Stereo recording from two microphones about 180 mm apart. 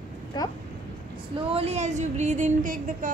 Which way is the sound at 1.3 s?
35° right (ahead or behind).